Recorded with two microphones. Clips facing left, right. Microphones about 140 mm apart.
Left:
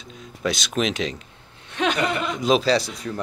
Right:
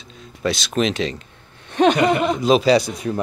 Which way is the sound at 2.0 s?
40° right (ahead or behind).